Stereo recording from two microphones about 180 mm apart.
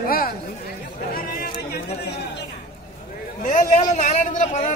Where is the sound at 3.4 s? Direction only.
45° left (ahead or behind).